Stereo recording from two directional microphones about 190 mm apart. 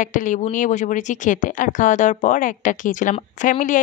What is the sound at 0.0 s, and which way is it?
Speech, 40° left (ahead or behind).